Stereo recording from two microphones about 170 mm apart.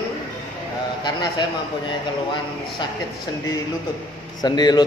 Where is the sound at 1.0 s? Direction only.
25° left (ahead or behind).